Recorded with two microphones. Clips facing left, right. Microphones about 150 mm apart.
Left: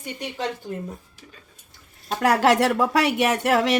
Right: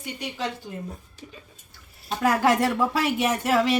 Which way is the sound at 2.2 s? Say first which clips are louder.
Left 3 dB; 75° left (ahead or behind).